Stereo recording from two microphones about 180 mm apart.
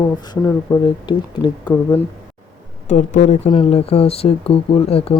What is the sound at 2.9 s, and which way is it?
Speech, 40° left (ahead or behind).